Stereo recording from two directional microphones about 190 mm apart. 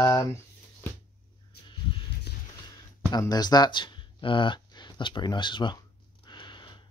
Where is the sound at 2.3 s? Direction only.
60° left (ahead or behind).